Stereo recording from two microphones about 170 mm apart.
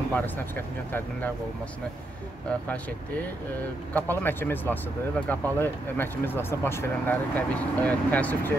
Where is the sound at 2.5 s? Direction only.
10° left (ahead or behind).